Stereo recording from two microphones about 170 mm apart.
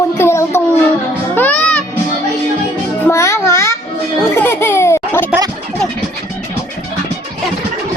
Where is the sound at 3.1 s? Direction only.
15° left (ahead or behind).